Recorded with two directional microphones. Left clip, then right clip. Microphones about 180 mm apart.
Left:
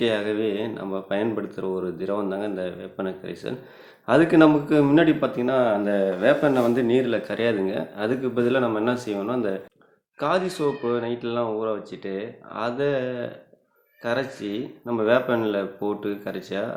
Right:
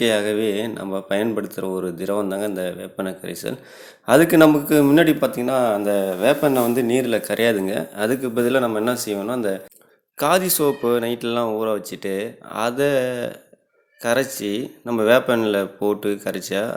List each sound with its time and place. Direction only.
0.0 s speech: 40° right (ahead or behind)
10.2 s speech: 45° right (ahead or behind)